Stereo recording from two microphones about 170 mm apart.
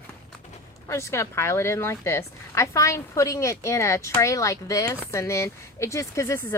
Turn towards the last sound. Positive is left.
turn(degrees=15)  # may be behind; listen again after turning